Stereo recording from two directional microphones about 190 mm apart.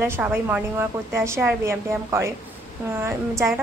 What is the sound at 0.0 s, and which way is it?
A woman's voice, 10° right (ahead or behind).